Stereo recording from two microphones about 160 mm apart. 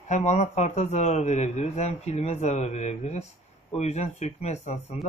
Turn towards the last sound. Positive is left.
turn(degrees=40)  # may be behind; listen again after turning